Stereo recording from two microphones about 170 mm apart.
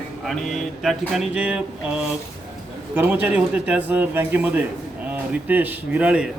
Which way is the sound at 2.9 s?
10° right (ahead or behind).